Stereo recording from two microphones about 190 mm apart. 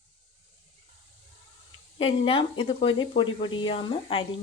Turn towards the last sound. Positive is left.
turn(degrees=30)  # may be behind; listen again after turning